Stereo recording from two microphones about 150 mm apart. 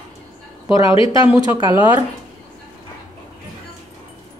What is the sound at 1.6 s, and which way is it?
Speech, 30° left (ahead or behind).